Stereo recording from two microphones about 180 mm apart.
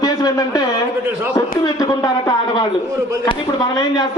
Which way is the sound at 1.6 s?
20° left (ahead or behind).